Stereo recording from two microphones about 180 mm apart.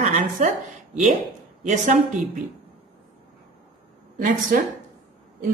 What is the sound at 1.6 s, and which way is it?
Speech, 45° right (ahead or behind).